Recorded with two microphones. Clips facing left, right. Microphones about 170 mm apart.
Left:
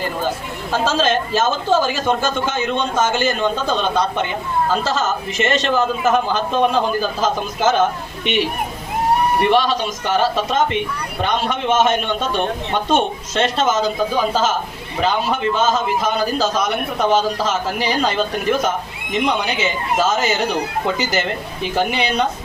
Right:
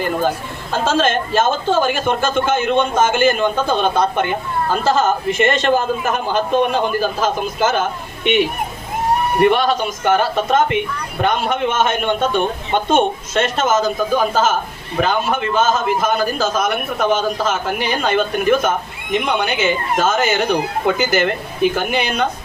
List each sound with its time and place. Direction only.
0.7 s a man's voice: 55° right (ahead or behind)
9.4 s a man's voice: 50° right (ahead or behind)